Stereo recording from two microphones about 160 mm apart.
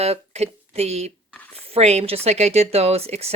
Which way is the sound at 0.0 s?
40° right (ahead or behind).